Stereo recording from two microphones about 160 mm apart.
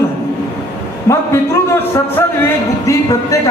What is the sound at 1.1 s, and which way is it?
Music, 15° left (ahead or behind).